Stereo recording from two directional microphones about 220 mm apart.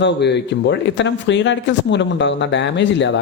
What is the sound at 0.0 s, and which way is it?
A man's voice, 50° left (ahead or behind).